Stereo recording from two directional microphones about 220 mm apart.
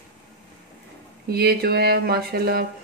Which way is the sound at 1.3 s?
45° right (ahead or behind).